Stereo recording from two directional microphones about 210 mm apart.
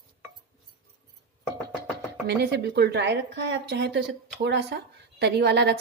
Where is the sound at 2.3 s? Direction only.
55° right (ahead or behind).